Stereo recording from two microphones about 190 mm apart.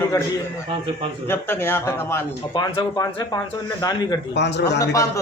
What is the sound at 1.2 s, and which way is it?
A man's voice, 10° left (ahead or behind).